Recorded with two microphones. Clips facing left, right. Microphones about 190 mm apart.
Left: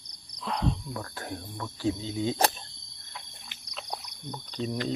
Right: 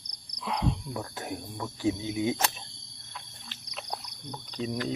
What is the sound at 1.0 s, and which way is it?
Speech, 20° right (ahead or behind).